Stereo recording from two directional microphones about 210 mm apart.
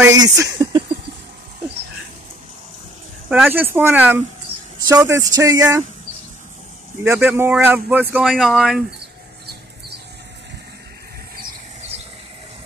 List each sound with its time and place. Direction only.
0.0 s speech: 15° right (ahead or behind)
3.3 s speech: 5° right (ahead or behind)
7.1 s speech: 10° right (ahead or behind)